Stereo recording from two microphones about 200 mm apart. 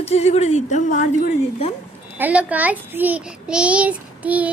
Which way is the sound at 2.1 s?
5° right (ahead or behind).